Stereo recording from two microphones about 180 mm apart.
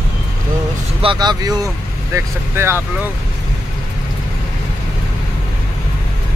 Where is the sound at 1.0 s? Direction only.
25° right (ahead or behind).